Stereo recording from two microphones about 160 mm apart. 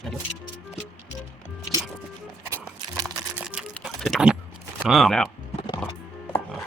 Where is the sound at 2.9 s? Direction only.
20° right (ahead or behind).